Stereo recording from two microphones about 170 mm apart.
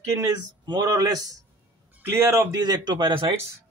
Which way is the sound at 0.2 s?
25° right (ahead or behind).